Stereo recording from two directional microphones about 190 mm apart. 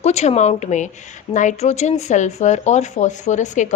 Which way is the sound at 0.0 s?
35° left (ahead or behind).